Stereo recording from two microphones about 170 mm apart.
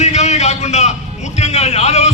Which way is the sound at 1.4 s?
40° left (ahead or behind).